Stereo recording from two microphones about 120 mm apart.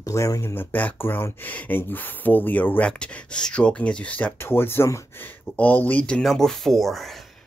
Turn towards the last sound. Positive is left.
turn(degrees=0)  # may be behind; listen again after turning